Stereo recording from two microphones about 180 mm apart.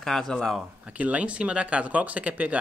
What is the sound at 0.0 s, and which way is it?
Speech, 5° left (ahead or behind).